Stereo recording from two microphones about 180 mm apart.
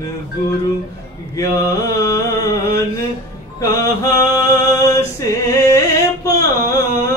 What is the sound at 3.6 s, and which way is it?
Mantra, 20° left (ahead or behind).